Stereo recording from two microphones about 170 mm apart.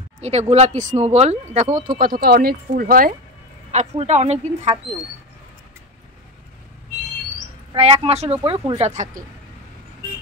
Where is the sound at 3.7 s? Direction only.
40° right (ahead or behind).